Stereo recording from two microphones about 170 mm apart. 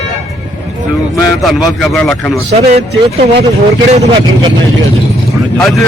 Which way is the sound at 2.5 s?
40° right (ahead or behind).